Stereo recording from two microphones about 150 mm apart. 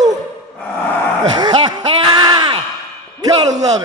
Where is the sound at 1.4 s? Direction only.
30° right (ahead or behind).